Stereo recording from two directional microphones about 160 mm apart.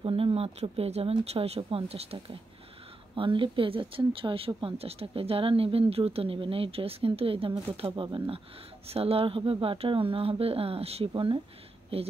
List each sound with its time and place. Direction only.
0.0 s speech: 35° right (ahead or behind)